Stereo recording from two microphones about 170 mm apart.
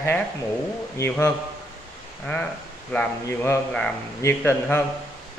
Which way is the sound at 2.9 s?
5° left (ahead or behind).